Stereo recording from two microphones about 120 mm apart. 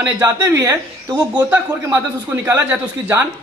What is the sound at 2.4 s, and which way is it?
Speech, 15° right (ahead or behind).